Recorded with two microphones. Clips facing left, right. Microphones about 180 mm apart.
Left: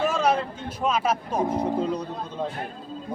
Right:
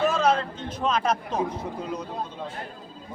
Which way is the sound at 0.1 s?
10° left (ahead or behind).